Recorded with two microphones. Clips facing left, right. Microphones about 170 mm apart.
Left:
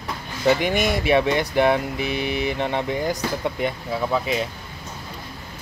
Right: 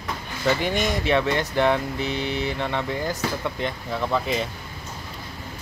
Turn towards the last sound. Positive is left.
turn(degrees=5)  # may be behind; listen again after turning